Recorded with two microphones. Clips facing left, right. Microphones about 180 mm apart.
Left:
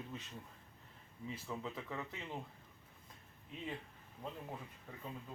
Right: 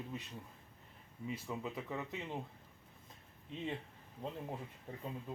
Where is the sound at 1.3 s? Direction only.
15° right (ahead or behind).